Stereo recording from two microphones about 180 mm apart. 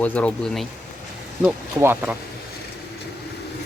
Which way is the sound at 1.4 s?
10° right (ahead or behind).